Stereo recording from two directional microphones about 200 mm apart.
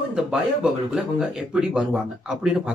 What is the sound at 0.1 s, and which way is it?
Speech, 5° right (ahead or behind).